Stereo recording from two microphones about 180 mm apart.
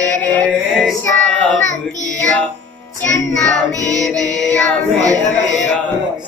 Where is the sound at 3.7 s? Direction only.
20° right (ahead or behind).